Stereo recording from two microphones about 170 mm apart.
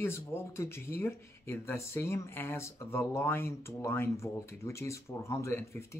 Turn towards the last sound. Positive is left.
turn(degrees=15)  # may be behind; listen again after turning